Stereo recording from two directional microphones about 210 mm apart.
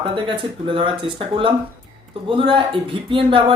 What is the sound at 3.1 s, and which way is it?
Speech, 25° right (ahead or behind).